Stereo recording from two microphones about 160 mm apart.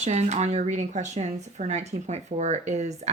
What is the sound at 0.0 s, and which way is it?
Speech, 45° right (ahead or behind).